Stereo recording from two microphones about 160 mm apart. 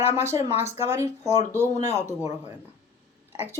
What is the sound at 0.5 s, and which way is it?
Speech, 45° left (ahead or behind).